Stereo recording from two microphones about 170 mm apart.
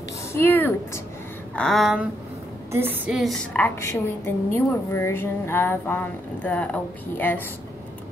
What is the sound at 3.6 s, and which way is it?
A woman's voice, 15° left (ahead or behind).